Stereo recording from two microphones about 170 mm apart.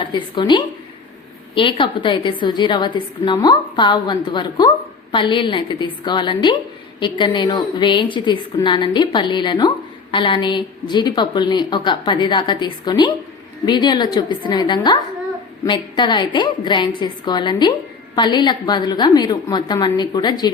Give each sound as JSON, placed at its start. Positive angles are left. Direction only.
{"t": 0.1, "sound": "a woman's voice", "side_deg": 25}